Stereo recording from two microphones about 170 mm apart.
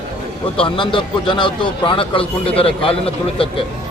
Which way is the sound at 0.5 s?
30° left (ahead or behind).